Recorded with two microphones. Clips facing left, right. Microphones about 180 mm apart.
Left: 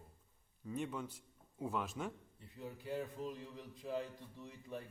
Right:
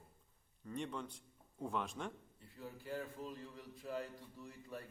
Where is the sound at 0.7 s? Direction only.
5° left (ahead or behind).